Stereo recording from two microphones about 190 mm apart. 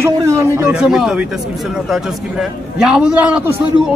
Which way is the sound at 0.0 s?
15° right (ahead or behind).